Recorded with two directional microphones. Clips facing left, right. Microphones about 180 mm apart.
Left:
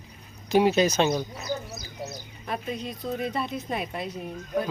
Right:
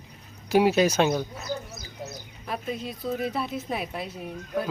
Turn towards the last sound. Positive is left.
turn(degrees=-5)  # may be behind; listen again after turning